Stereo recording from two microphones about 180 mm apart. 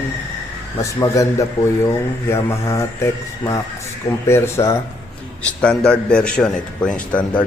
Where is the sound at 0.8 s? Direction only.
20° left (ahead or behind).